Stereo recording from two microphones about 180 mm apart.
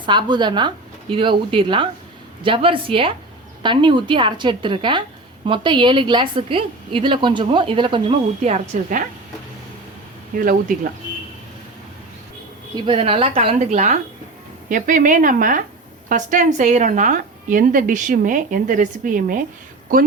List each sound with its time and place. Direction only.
0.0 s a woman's voice: 25° right (ahead or behind); by 9.0 s 45° right (ahead or behind)
10.3 s a woman's voice: 50° right (ahead or behind)
12.7 s a woman's voice: 30° right (ahead or behind); by 19.5 s 50° right (ahead or behind)